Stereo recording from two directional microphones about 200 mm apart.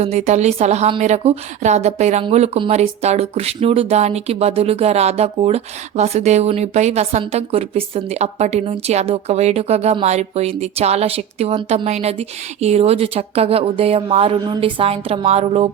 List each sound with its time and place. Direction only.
0.0 s a woman's voice: 35° right (ahead or behind)